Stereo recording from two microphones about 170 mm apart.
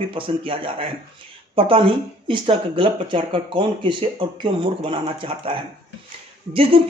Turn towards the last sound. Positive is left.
turn(degrees=-35)  # may be behind; listen again after turning